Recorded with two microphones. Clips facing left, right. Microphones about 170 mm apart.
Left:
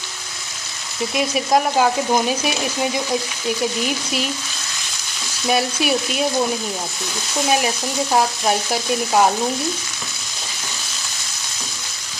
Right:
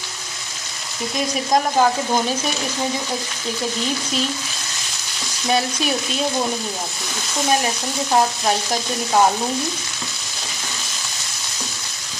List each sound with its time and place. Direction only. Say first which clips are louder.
1.1 s speech: left 1 dB; 5° left (ahead or behind)
5.5 s speech: left 2 dB; 10° left (ahead or behind)